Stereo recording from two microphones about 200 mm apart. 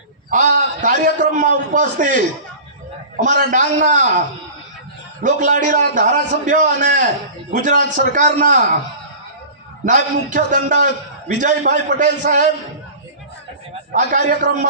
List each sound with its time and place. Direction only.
0.3 s a man's voice: 40° right (ahead or behind)
5.2 s a man's voice: 40° right (ahead or behind)
9.8 s a man's voice: 40° right (ahead or behind)
13.9 s a man's voice: 40° right (ahead or behind)